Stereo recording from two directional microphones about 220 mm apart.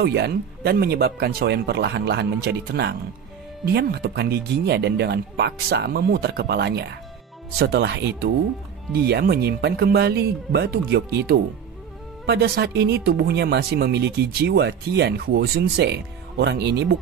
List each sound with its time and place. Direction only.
0.0 s speech: 50° right (ahead or behind)